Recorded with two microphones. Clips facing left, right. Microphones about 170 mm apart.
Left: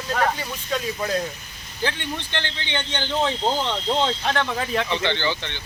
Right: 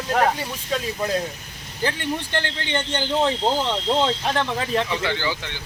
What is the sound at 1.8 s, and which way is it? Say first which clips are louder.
Speech: right 2 dB; 5° right (ahead or behind).